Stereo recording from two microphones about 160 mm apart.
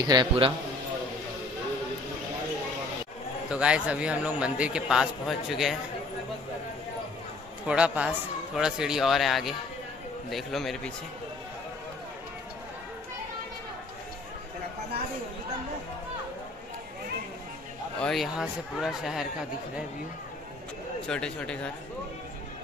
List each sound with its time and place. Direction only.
0.0 s speech: 25° right (ahead or behind)
3.4 s a man's voice: 5° right (ahead or behind)
7.6 s speech: 5° right (ahead or behind)
18.0 s speech: centre (ahead or behind)
21.1 s speech: 5° left (ahead or behind)